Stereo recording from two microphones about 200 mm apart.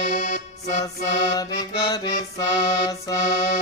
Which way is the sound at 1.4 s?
20° left (ahead or behind).